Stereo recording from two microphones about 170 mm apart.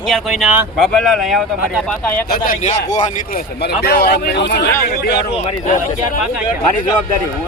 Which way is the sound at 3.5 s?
75° left (ahead or behind).